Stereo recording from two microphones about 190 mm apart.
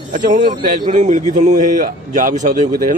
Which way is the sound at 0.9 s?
40° right (ahead or behind).